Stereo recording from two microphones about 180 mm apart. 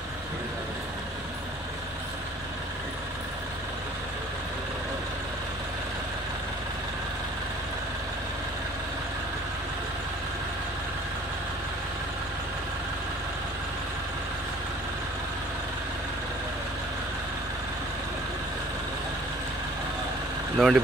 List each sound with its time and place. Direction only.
20.6 s speech: centre (ahead or behind)